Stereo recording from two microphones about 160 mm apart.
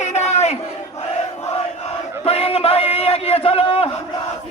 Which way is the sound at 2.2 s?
40° left (ahead or behind).